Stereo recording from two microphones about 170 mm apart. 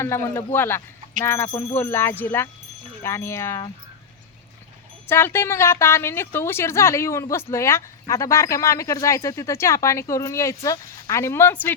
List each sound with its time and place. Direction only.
0.0 s a woman's voice: 15° left (ahead or behind)
5.0 s a woman's voice: 15° left (ahead or behind)